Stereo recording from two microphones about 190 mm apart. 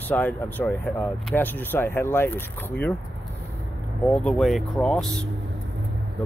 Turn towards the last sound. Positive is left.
turn(degrees=5)  # may be behind; listen again after turning